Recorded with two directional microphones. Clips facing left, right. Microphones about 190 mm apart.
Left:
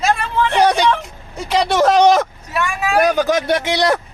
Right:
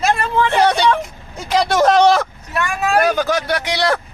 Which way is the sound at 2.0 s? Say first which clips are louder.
Left 3 dB; 15° left (ahead or behind).